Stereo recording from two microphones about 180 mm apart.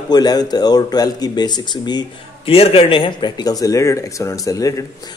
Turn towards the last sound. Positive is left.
turn(degrees=20)  # may be behind; listen again after turning